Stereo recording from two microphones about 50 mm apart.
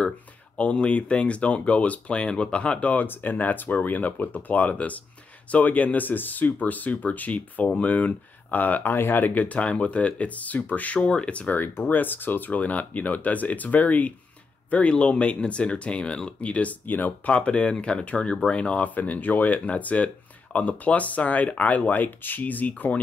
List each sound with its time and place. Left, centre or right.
0.6 s speech: left
3.1 s speech: left
9.4 s speech: left
11.0 s speech: centre
11.5 s speech: left
16.8 s speech: left
17.3 s speech: left